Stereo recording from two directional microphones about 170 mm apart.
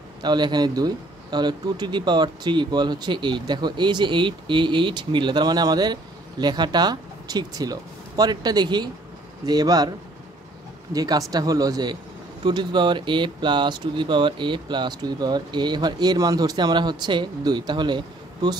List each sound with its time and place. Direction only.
0.2 s speech: 25° right (ahead or behind)
10.9 s speech: 20° right (ahead or behind)